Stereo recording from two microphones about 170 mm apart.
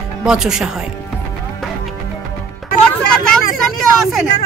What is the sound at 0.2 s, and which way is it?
Speech, 5° right (ahead or behind).